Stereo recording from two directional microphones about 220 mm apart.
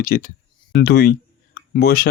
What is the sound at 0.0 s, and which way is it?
Speech, 40° left (ahead or behind).